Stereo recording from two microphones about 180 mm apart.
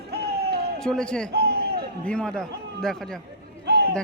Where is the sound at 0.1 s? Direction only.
60° right (ahead or behind).